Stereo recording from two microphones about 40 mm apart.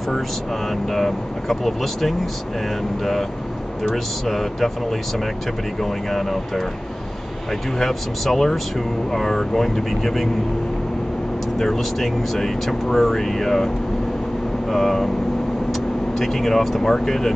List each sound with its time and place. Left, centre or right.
0.8 s speech: centre
3.8 s speech: centre
5.8 s speech: centre
7.8 s speech: centre
11.5 s speech: centre
14.7 s speech: centre